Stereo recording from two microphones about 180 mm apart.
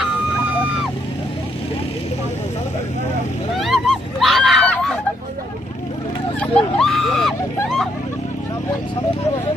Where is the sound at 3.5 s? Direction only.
Centre (ahead or behind).